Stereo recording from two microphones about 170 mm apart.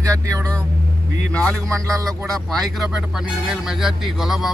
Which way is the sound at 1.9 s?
20° right (ahead or behind).